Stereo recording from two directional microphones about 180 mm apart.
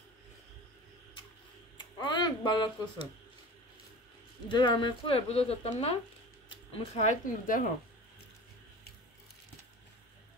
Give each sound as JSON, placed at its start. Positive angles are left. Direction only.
{"t": 2.0, "sound": "speech", "side_deg": 25}
{"t": 4.5, "sound": "speech", "side_deg": 25}